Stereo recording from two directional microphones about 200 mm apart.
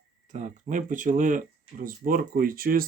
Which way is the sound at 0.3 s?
40° right (ahead or behind).